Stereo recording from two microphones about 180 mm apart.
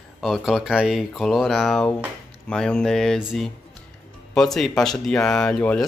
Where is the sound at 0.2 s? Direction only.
Centre (ahead or behind).